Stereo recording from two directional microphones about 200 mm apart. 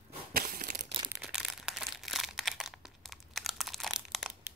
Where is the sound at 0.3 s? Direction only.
45° right (ahead or behind).